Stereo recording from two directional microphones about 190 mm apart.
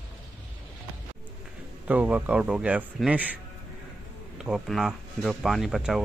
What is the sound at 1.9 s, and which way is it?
Speech, 10° right (ahead or behind).